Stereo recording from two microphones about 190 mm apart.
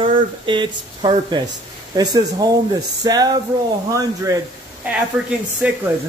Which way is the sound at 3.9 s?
15° right (ahead or behind).